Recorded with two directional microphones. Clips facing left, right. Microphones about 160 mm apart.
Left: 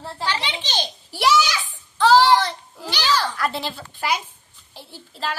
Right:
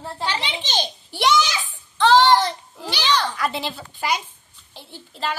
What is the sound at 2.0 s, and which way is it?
Child singing, 5° left (ahead or behind).